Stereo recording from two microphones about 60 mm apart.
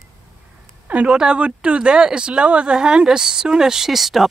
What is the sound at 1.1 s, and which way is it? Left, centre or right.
Speech, centre.